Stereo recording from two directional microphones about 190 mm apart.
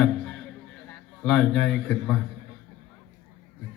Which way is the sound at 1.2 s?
5° left (ahead or behind).